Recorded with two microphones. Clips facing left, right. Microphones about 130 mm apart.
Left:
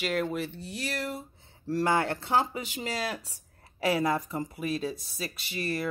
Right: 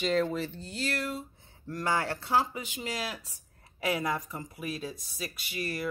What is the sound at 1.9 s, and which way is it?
Speech, 25° left (ahead or behind).